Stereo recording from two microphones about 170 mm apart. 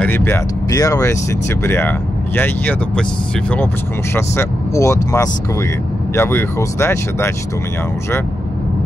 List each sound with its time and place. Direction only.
0.0 s speech: 10° left (ahead or behind)